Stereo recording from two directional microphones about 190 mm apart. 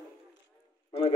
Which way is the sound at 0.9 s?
30° left (ahead or behind).